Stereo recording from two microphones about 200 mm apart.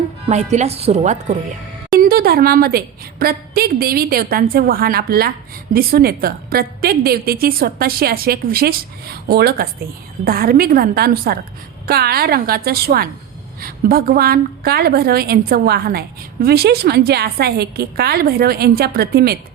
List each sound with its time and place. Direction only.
0.5 s speech: 30° right (ahead or behind)
2.0 s a woman's voice: 50° right (ahead or behind)